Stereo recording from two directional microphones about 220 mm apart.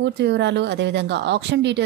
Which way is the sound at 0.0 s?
50° right (ahead or behind).